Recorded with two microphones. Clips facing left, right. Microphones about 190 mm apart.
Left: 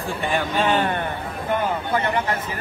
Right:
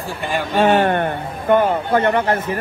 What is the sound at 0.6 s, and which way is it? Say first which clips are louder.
Speech: right 9 dB; 55° right (ahead or behind).